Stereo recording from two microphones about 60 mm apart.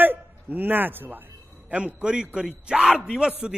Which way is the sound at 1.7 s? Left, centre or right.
Centre.